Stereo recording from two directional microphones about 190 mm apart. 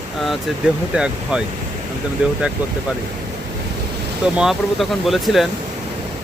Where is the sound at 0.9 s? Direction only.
5° right (ahead or behind).